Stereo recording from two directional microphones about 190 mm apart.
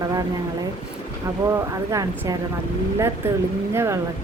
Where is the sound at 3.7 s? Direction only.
15° right (ahead or behind).